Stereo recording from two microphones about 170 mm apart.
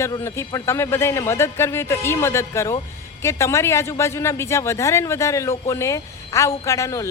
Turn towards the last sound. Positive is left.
turn(degrees=15)  # may be behind; listen again after turning